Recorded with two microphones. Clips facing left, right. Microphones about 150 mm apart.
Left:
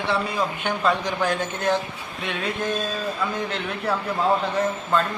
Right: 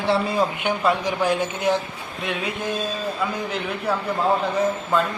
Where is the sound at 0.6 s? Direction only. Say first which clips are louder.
Right 2 dB; 15° right (ahead or behind).